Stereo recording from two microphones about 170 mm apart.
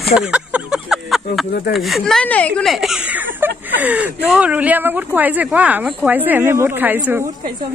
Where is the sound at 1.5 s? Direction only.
70° left (ahead or behind).